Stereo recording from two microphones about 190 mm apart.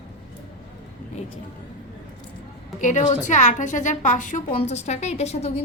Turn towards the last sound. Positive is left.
turn(degrees=35)  # may be behind; listen again after turning